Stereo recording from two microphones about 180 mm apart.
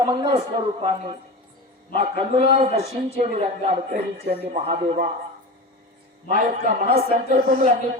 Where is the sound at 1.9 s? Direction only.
30° right (ahead or behind).